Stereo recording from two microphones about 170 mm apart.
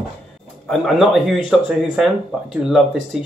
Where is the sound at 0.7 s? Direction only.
Centre (ahead or behind).